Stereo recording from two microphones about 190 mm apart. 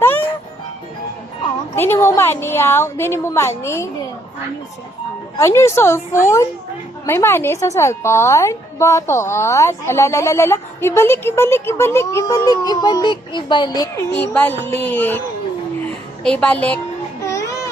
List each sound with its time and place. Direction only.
1.7 s a woman's voice: 10° left (ahead or behind)
5.4 s a woman's voice: 15° left (ahead or behind)
14.2 s a woman's voice: 10° left (ahead or behind)
16.2 s a woman's voice: 5° left (ahead or behind)
17.2 s music: 15° left (ahead or behind)